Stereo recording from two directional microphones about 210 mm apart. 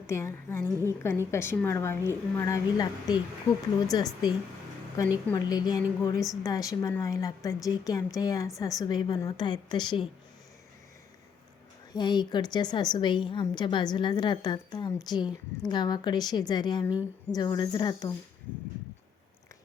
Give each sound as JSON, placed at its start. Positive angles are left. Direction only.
{"t": 0.1, "sound": "a woman's voice", "side_deg": 15}
{"t": 11.9, "sound": "a woman's voice", "side_deg": 20}